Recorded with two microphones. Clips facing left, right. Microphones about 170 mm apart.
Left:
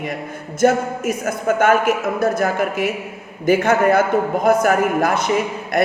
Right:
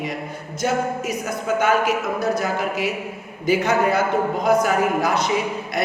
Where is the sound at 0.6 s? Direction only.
50° left (ahead or behind).